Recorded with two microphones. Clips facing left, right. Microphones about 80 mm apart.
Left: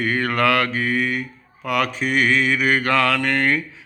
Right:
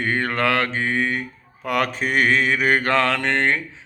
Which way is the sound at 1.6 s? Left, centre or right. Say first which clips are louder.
Even; right.